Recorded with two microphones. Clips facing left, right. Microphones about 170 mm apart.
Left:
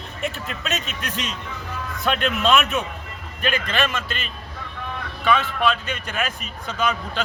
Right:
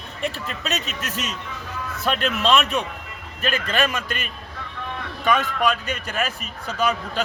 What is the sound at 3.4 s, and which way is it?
Speech, 40° right (ahead or behind).